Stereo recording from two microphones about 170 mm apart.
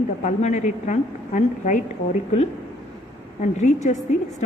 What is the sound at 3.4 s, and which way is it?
Speech, 45° left (ahead or behind).